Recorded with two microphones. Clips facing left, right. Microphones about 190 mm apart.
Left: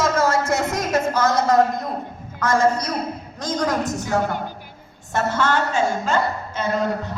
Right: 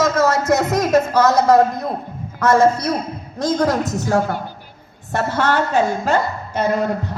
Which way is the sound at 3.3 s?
55° right (ahead or behind).